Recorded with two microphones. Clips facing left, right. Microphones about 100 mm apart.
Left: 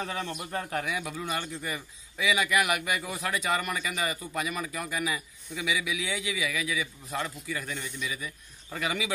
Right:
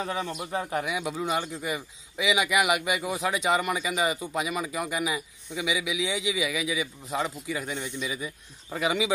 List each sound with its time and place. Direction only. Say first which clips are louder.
0.0 s speech: right 3 dB; 10° right (ahead or behind)